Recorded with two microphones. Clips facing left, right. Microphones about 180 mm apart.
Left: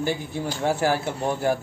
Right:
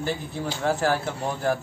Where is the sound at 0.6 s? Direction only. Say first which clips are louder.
Left 1 dB; 10° left (ahead or behind).